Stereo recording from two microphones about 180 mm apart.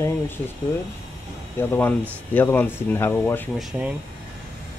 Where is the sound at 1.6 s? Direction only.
10° left (ahead or behind).